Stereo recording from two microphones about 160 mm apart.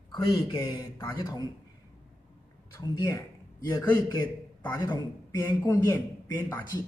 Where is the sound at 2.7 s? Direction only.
20° left (ahead or behind).